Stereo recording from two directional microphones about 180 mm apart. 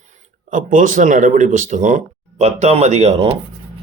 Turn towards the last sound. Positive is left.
turn(degrees=-35)  # may be behind; listen again after turning